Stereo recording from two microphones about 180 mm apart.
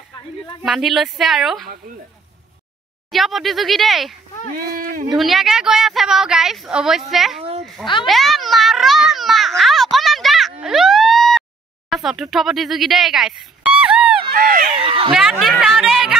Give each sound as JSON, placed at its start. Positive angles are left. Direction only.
{"t": 0.7, "sound": "a woman's voice", "side_deg": 0}
{"t": 3.1, "sound": "a woman's voice", "side_deg": 0}
{"t": 4.7, "sound": "speech", "side_deg": -50}
{"t": 5.1, "sound": "a woman's voice", "side_deg": 0}
{"t": 8.0, "sound": "a sound", "side_deg": 0}
{"t": 11.9, "sound": "speech", "side_deg": 0}
{"t": 14.3, "sound": "speech", "side_deg": -55}
{"t": 14.8, "sound": "a sound", "side_deg": -30}
{"t": 15.1, "sound": "a woman's voice", "side_deg": 0}